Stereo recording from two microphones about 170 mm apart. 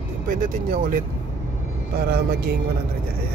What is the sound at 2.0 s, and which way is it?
Speech, 65° right (ahead or behind).